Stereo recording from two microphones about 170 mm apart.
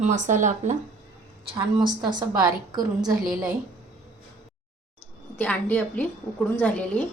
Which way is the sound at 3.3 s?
5° right (ahead or behind).